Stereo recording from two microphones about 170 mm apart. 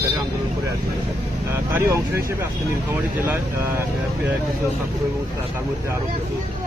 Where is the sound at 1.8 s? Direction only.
15° right (ahead or behind).